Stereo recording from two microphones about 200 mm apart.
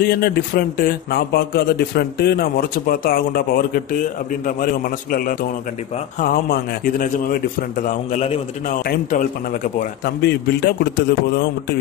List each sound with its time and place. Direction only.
0.0 s a man's voice: 50° left (ahead or behind); by 8.7 s 35° left (ahead or behind)
9.8 s a man's voice: 55° left (ahead or behind)